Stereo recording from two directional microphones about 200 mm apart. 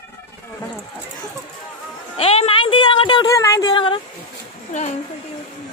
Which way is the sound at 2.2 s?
30° left (ahead or behind).